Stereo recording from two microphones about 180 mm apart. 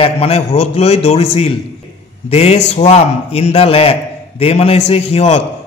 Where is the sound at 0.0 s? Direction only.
35° left (ahead or behind).